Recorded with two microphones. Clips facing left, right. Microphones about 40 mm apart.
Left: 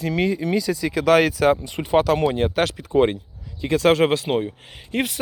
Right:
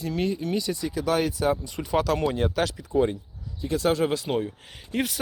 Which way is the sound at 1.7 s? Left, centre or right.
Left.